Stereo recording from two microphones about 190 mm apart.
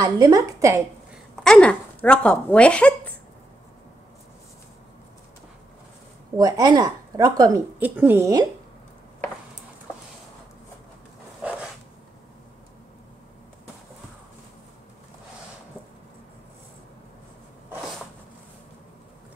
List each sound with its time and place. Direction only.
0.0 s a woman's voice: 20° right (ahead or behind)
1.1 s a woman's voice: centre (ahead or behind)
6.3 s a woman's voice: 20° right (ahead or behind)
11.4 s zipper: 5° right (ahead or behind)